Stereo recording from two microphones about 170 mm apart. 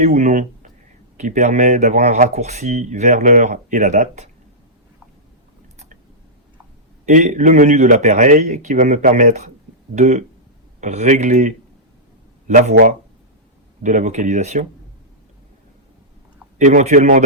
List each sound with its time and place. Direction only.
0.0 s speech: 40° right (ahead or behind)
7.0 s speech: 45° right (ahead or behind)
16.6 s speech: 45° right (ahead or behind)